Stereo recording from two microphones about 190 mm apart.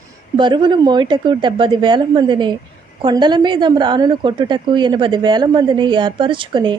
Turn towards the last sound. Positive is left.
turn(degrees=-25)  # may be behind; listen again after turning